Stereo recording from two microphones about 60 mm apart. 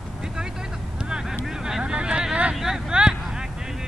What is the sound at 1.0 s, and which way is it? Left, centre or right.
Vehicle, centre.